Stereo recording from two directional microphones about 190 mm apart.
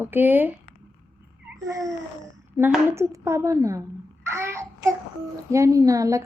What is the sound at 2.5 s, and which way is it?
A woman's voice, 10° right (ahead or behind).